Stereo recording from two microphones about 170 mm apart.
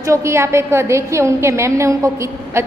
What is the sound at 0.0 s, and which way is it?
A woman's voice, 15° right (ahead or behind).